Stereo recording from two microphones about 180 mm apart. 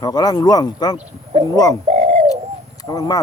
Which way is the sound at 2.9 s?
20° left (ahead or behind).